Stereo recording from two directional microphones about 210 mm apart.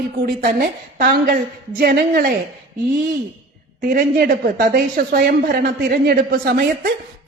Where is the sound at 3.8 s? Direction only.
40° right (ahead or behind).